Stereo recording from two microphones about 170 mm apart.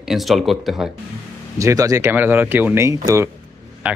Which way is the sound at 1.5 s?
20° right (ahead or behind).